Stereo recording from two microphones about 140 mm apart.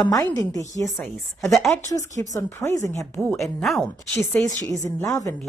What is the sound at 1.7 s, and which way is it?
A woman's voice, 20° left (ahead or behind).